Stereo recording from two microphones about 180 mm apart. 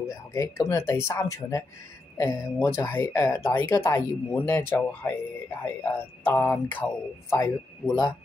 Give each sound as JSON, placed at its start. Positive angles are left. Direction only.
{"t": 0.3, "sound": "speech", "side_deg": 15}